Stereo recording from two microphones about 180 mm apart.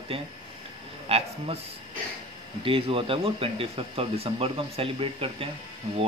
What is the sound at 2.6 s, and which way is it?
A man's voice, 30° right (ahead or behind).